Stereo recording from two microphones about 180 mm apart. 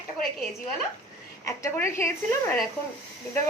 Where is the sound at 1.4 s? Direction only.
15° left (ahead or behind).